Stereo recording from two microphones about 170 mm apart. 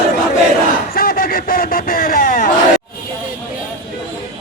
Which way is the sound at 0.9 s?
55° left (ahead or behind).